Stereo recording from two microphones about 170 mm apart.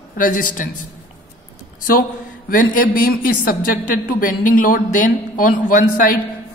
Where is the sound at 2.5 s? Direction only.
55° left (ahead or behind).